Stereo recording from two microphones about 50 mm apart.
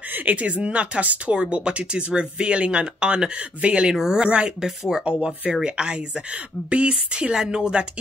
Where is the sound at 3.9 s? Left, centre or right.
Centre.